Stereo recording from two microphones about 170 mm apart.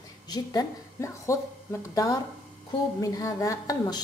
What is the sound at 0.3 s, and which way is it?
A woman's voice, 20° left (ahead or behind).